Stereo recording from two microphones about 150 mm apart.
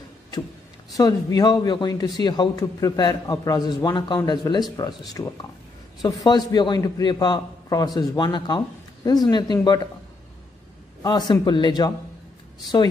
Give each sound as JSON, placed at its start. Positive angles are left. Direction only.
{"t": 0.9, "sound": "a man's voice", "side_deg": 25}
{"t": 11.0, "sound": "a man's voice", "side_deg": 30}